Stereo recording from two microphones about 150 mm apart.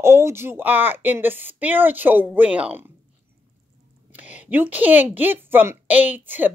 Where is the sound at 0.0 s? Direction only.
15° right (ahead or behind).